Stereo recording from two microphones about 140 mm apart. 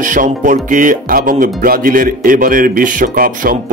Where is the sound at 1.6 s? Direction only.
90° right.